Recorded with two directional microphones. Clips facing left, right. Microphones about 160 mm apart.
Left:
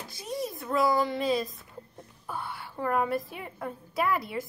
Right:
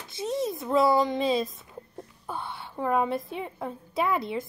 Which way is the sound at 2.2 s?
25° right (ahead or behind).